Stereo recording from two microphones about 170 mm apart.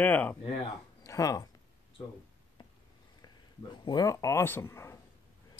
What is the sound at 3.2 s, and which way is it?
Speech, 25° left (ahead or behind).